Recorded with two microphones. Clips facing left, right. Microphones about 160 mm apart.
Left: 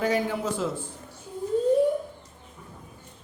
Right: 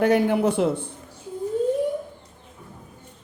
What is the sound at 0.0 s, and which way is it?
Speech, 60° right (ahead or behind).